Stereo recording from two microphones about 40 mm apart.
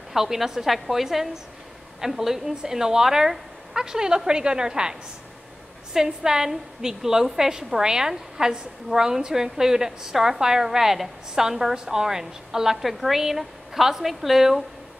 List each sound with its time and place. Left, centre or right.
0.1 s a woman's voice: centre
5.9 s a woman's voice: centre